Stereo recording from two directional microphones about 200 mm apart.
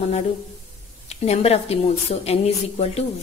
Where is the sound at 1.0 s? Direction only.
30° left (ahead or behind).